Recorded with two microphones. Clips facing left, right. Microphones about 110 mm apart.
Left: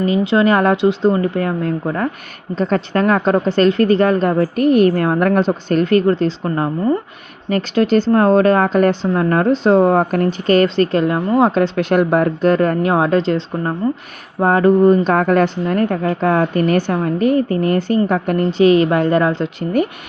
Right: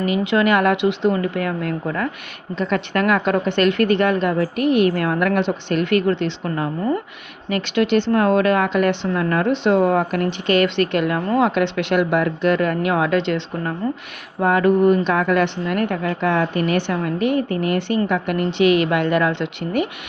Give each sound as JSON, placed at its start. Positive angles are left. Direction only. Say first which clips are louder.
{"t": 0.0, "sound": "speech", "louder": "left 4 dB", "side_deg": 30}
{"t": 15.1, "sound": "speech", "louder": "left 4 dB", "side_deg": 40}